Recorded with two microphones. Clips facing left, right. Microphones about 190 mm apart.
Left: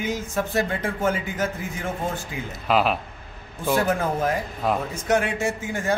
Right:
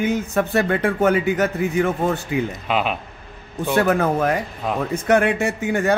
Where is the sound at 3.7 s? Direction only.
65° right (ahead or behind).